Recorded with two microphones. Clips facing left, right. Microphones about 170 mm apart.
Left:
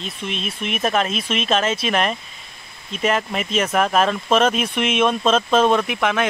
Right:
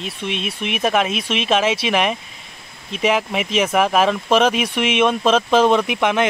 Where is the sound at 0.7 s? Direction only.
10° right (ahead or behind).